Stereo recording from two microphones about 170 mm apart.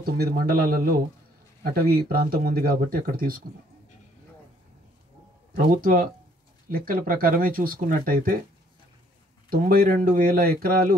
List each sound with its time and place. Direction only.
0.0 s speech: 60° right (ahead or behind)
5.5 s speech: 60° right (ahead or behind)
9.5 s speech: 55° right (ahead or behind)